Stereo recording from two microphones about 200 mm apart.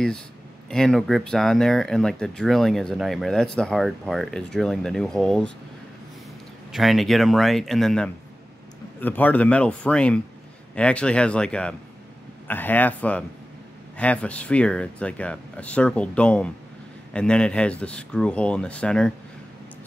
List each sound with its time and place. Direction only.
0.7 s speech: 5° left (ahead or behind)
6.7 s speech: centre (ahead or behind)